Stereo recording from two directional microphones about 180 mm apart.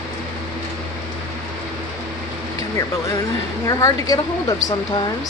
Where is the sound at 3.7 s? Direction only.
20° left (ahead or behind).